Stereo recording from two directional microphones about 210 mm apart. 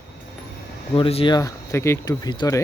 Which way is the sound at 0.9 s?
25° left (ahead or behind).